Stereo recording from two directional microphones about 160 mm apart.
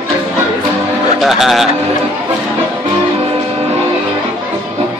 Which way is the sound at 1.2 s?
Centre (ahead or behind).